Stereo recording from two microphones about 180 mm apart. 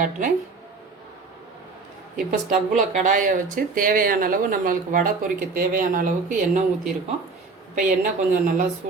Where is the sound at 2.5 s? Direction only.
45° right (ahead or behind).